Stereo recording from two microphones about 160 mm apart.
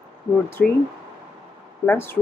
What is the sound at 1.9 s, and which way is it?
Speech, 15° left (ahead or behind).